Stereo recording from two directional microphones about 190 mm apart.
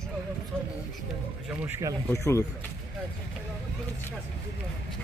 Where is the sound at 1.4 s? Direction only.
10° right (ahead or behind).